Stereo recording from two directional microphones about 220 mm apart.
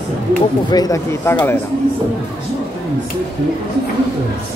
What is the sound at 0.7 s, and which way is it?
Speech, 15° left (ahead or behind).